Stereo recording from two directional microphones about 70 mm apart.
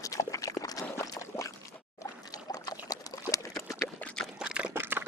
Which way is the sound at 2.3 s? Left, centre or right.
Left.